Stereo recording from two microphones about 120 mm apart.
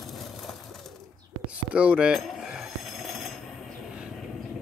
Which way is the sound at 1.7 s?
10° right (ahead or behind).